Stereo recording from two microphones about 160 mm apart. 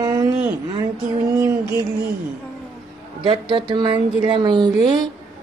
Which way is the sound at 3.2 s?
30° right (ahead or behind).